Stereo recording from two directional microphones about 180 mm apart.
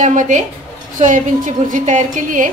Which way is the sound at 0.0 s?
45° right (ahead or behind).